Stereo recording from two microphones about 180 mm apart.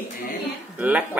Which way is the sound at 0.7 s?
10° right (ahead or behind).